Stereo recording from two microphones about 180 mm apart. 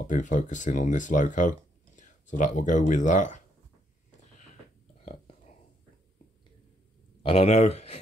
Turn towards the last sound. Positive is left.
turn(degrees=35)  # may be behind; listen again after turning